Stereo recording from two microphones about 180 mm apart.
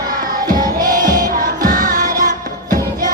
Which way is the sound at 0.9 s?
50° right (ahead or behind).